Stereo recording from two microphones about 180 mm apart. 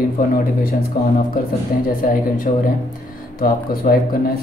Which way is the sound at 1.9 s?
50° left (ahead or behind).